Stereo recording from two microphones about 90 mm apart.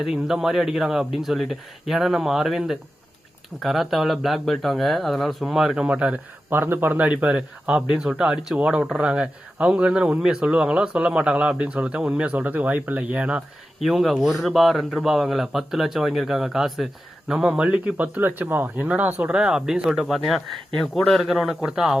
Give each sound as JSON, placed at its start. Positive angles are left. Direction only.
{"t": 0.0, "sound": "speech", "side_deg": -5}
{"t": 13.8, "sound": "speech", "side_deg": 0}